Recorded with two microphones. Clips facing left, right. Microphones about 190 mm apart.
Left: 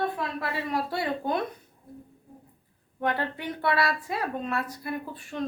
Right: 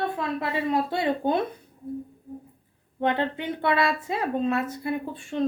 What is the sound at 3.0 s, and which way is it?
A woman's voice, 20° right (ahead or behind).